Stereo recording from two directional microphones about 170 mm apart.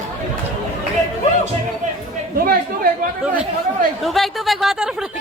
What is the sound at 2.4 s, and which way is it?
Chatter, 60° right (ahead or behind).